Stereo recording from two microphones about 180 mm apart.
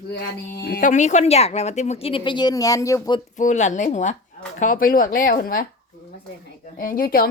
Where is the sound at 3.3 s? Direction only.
40° left (ahead or behind).